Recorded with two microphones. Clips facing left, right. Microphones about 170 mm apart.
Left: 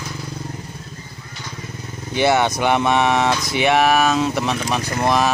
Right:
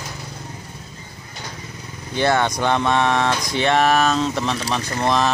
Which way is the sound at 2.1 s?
10° left (ahead or behind).